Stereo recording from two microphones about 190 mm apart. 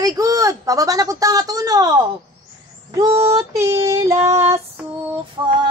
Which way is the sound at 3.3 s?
15° right (ahead or behind).